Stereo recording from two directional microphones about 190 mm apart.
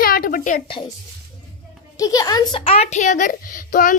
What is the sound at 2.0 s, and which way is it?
A child's voice, 20° left (ahead or behind).